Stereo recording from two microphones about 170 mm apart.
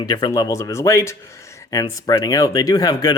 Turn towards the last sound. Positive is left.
turn(degrees=25)  # may be behind; listen again after turning